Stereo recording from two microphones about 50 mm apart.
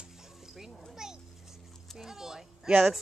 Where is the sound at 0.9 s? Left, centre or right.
Centre.